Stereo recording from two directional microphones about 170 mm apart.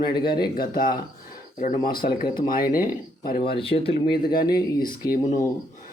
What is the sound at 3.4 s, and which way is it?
Speech, 30° left (ahead or behind).